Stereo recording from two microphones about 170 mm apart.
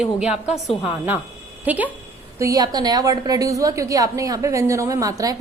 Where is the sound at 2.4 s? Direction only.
20° right (ahead or behind).